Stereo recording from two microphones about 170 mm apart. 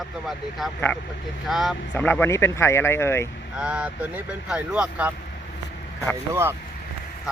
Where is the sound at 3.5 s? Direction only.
5° right (ahead or behind).